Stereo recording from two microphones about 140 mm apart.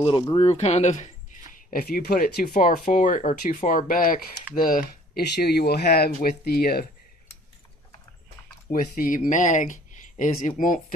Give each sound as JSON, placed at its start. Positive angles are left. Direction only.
{"t": 0.0, "sound": "speech", "side_deg": 40}
{"t": 1.7, "sound": "speech", "side_deg": 90}
{"t": 8.7, "sound": "speech", "side_deg": 80}